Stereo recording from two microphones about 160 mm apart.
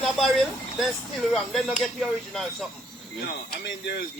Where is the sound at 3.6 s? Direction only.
90° left.